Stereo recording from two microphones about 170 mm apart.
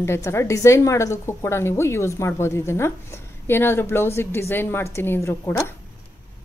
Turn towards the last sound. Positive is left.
turn(degrees=20)  # may be behind; listen again after turning